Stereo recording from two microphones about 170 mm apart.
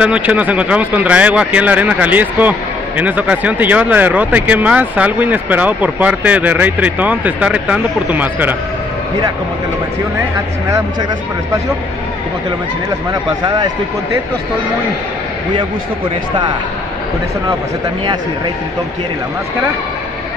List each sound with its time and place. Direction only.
0.0 s speech: 5° right (ahead or behind)
13.4 s a man's voice: 25° right (ahead or behind)